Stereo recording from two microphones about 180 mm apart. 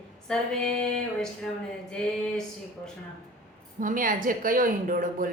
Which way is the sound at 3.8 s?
50° right (ahead or behind).